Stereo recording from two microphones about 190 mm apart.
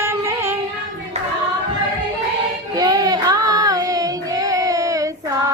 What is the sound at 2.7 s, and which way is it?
Child singing, 20° right (ahead or behind).